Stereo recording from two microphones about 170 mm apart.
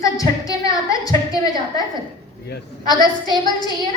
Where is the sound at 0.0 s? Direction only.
20° left (ahead or behind).